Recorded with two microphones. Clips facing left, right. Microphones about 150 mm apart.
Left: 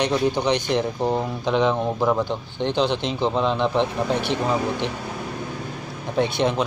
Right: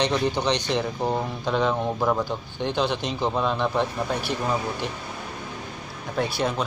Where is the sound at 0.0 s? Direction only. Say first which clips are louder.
Left 2 dB; 10° left (ahead or behind).